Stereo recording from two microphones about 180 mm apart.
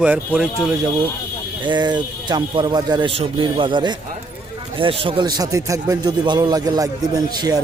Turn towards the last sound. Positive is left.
turn(degrees=-20)  # may be behind; listen again after turning